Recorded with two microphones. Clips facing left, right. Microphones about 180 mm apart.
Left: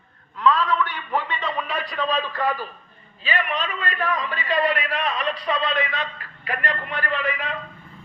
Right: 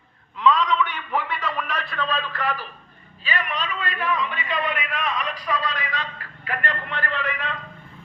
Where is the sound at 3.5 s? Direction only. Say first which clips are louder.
Left 2 dB; 40° left (ahead or behind); by 6.0 s 25° left (ahead or behind).